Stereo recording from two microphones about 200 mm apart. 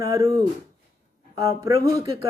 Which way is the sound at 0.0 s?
15° right (ahead or behind).